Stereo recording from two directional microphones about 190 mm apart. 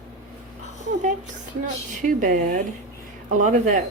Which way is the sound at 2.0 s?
45° right (ahead or behind).